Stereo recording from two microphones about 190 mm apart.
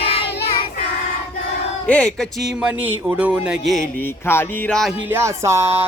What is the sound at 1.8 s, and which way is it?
Speech, 5° left (ahead or behind).